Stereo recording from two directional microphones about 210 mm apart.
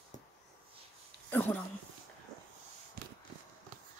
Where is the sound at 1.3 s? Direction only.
10° left (ahead or behind).